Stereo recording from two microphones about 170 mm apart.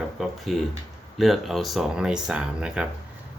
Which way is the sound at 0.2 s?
Centre (ahead or behind).